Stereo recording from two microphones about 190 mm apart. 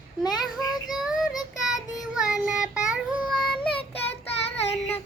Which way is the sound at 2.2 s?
5° right (ahead or behind).